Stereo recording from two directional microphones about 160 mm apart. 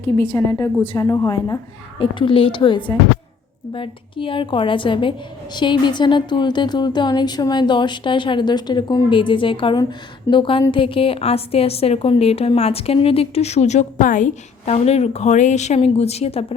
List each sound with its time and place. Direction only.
0.3 s a woman's voice: 15° left (ahead or behind)
2.0 s a woman's voice: 30° left (ahead or behind)